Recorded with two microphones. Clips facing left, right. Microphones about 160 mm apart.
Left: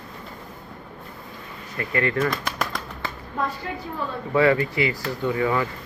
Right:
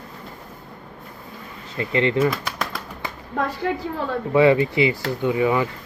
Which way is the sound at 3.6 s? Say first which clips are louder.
Right 8 dB; 75° right (ahead or behind).